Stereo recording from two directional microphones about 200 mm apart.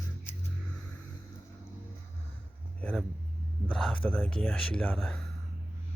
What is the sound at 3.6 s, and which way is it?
Speech, 5° left (ahead or behind).